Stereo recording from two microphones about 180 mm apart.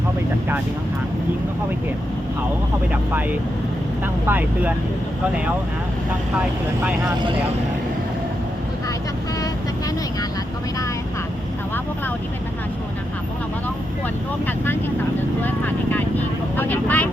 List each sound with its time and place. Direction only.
2.9 s speech: 10° right (ahead or behind)
14.4 s speech: 10° left (ahead or behind)